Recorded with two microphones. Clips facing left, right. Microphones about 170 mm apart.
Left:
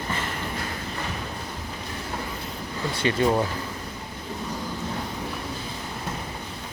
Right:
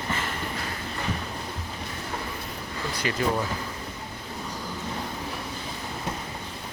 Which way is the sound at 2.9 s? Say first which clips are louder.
Left 5 dB; 25° left (ahead or behind).